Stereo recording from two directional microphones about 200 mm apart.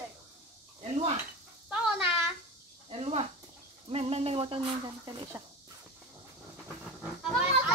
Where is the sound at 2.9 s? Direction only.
30° right (ahead or behind).